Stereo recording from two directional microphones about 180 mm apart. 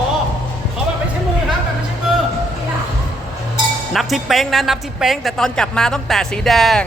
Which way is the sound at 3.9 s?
Centre (ahead or behind).